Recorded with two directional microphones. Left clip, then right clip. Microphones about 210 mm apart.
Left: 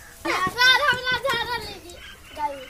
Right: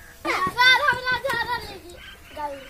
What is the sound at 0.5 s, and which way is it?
Child singing, 5° left (ahead or behind).